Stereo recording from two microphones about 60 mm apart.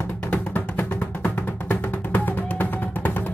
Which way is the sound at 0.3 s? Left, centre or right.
Left.